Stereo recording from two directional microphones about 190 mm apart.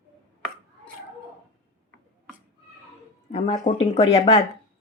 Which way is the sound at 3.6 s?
40° left (ahead or behind).